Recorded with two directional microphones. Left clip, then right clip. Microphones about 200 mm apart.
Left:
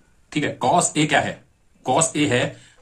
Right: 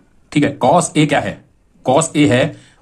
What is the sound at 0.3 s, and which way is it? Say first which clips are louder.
Speech: right 7 dB; 45° right (ahead or behind).